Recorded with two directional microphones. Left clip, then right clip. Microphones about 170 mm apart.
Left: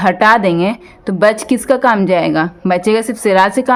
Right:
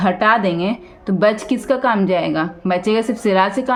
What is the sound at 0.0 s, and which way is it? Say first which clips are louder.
Speech: left 5 dB; 40° left (ahead or behind).